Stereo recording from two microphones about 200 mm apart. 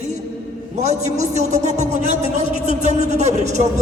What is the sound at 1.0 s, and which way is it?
A man's voice, 35° right (ahead or behind).